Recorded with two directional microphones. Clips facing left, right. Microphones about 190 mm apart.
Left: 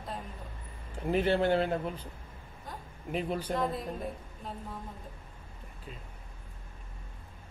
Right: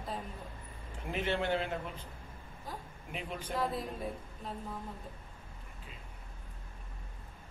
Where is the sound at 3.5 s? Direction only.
Centre (ahead or behind).